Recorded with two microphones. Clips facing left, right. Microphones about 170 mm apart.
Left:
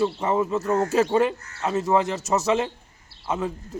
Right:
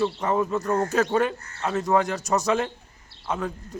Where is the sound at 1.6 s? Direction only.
5° left (ahead or behind).